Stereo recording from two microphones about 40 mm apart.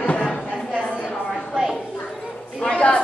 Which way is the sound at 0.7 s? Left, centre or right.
Centre.